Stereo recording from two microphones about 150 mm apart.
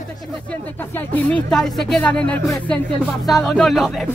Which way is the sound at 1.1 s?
5° left (ahead or behind).